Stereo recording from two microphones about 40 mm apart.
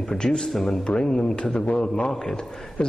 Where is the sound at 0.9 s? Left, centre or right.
Centre.